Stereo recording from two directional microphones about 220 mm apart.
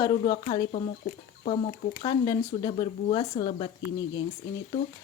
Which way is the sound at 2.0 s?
15° left (ahead or behind).